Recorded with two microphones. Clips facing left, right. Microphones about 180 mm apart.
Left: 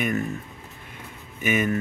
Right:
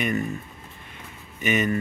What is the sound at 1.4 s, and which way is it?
Speech, 10° left (ahead or behind).